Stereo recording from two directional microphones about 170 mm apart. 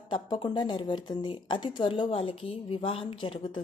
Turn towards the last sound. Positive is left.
turn(degrees=30)  # may be behind; listen again after turning